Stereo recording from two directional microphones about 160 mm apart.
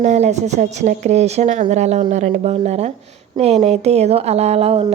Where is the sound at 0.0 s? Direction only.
45° right (ahead or behind).